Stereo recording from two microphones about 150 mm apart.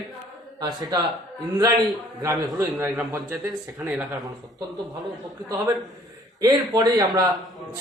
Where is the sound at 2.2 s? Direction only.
20° right (ahead or behind).